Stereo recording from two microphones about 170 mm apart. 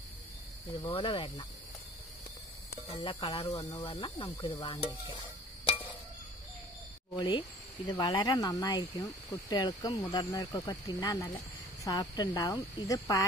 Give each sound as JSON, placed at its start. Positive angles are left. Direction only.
{"t": 0.8, "sound": "speech", "side_deg": 30}
{"t": 2.9, "sound": "speech", "side_deg": 30}
{"t": 7.2, "sound": "speech", "side_deg": 25}